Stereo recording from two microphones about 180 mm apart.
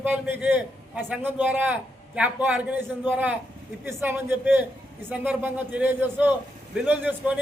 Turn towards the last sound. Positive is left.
turn(degrees=-10)  # may be behind; listen again after turning